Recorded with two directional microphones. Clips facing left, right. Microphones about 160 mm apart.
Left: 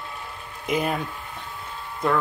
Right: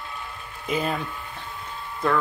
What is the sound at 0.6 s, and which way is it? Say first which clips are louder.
Speech: left 1 dB; 15° left (ahead or behind).